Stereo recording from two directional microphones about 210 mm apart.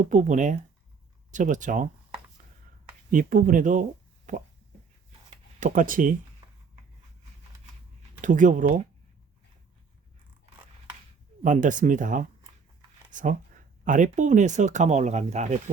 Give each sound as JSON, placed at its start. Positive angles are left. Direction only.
{"t": 0.0, "sound": "speech", "side_deg": -35}
{"t": 3.1, "sound": "speech", "side_deg": -40}
{"t": 4.3, "sound": "a sound", "side_deg": -35}
{"t": 5.5, "sound": "speech", "side_deg": -40}
{"t": 8.2, "sound": "speech", "side_deg": -35}
{"t": 11.4, "sound": "speech", "side_deg": -35}
{"t": 13.1, "sound": "a sound", "side_deg": -40}
{"t": 13.8, "sound": "speech", "side_deg": -35}